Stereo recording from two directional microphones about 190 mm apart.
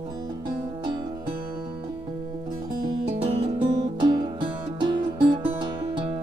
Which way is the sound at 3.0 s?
35° right (ahead or behind).